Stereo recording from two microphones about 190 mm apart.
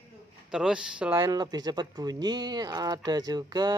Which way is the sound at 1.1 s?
20° right (ahead or behind).